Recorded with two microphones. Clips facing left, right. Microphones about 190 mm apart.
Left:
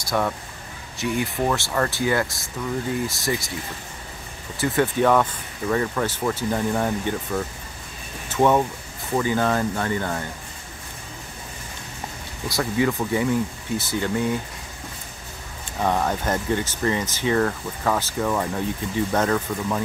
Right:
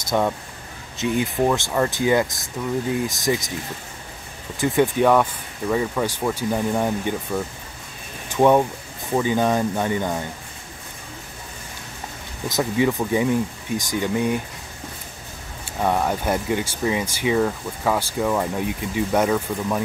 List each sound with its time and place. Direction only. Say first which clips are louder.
0.0 s speech: right 3 dB; 20° right (ahead or behind)
4.6 s speech: right 2 dB; 15° right (ahead or behind)
12.4 s speech: right 2 dB; 20° right (ahead or behind)
15.8 s speech: right 1 dB; 10° right (ahead or behind)